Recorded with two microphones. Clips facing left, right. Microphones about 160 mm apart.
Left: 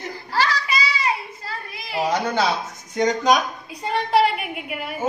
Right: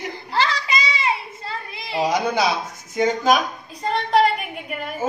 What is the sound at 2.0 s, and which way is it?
Speech, 10° right (ahead or behind).